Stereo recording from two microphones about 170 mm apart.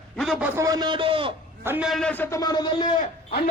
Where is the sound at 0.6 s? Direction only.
25° right (ahead or behind).